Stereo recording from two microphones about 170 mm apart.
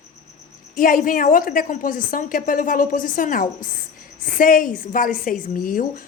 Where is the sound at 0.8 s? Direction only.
55° left (ahead or behind).